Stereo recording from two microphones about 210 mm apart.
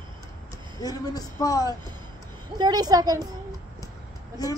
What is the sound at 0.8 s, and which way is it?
Speech, 20° left (ahead or behind).